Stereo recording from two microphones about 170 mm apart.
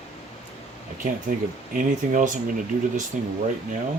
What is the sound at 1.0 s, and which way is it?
Speech, 50° right (ahead or behind).